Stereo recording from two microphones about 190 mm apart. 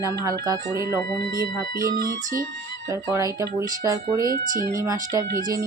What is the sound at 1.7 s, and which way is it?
Music, 50° right (ahead or behind).